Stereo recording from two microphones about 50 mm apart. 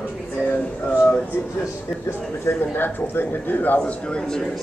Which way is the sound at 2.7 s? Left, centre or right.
Left.